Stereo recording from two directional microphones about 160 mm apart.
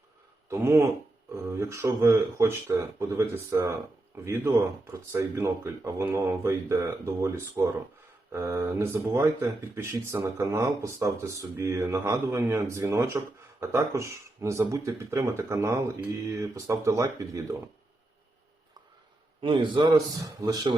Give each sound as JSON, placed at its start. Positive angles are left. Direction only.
{"t": 0.5, "sound": "a man's voice", "side_deg": -15}
{"t": 19.4, "sound": "a man's voice", "side_deg": -30}